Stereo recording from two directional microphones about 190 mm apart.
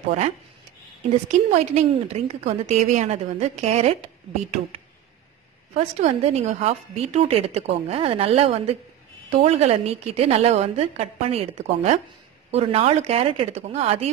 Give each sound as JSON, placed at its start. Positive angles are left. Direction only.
{"t": 1.3, "sound": "a woman's voice", "side_deg": -35}